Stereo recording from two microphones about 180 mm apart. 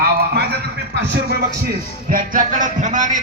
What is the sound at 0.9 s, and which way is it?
Speech, 80° right.